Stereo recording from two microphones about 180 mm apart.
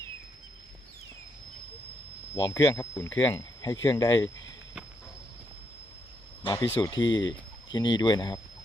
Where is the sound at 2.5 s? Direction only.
15° left (ahead or behind).